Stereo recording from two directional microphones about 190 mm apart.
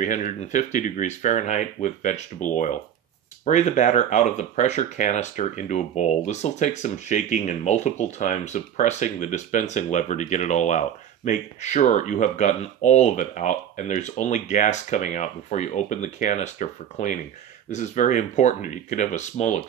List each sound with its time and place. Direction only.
0.0 s speech: 40° left (ahead or behind)